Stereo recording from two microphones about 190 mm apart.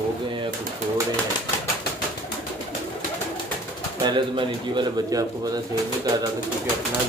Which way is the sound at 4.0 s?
25° right (ahead or behind).